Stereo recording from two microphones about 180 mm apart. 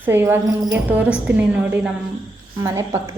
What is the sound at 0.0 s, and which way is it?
A woman's voice, 10° right (ahead or behind).